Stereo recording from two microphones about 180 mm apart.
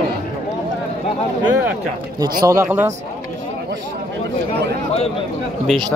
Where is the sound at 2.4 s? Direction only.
15° right (ahead or behind).